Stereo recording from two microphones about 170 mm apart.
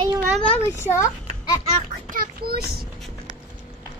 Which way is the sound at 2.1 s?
60° right (ahead or behind).